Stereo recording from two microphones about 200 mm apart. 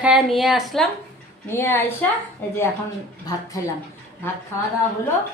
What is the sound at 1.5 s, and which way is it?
Speech, 10° left (ahead or behind).